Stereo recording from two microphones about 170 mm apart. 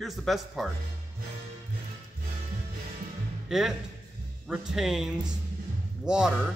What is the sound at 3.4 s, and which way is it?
Speech, 5° right (ahead or behind).